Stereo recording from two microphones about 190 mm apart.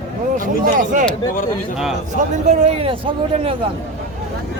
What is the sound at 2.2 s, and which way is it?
Speech, 35° right (ahead or behind).